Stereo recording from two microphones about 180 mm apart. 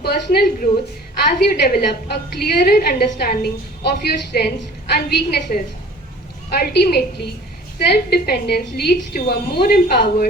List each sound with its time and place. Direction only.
0.0 s a woman's voice: 60° left (ahead or behind)